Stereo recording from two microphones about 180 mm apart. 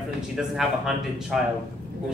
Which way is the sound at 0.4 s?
Centre (ahead or behind).